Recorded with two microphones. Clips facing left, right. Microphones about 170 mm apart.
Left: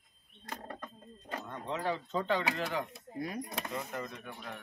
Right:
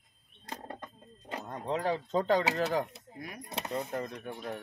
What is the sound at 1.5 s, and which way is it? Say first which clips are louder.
Speech: right 4 dB; 35° right (ahead or behind).